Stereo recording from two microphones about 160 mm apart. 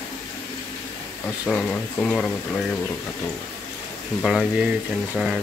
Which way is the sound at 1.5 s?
5° left (ahead or behind).